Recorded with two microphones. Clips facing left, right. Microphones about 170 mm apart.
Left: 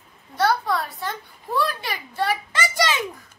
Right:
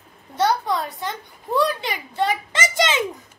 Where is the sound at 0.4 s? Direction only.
20° right (ahead or behind).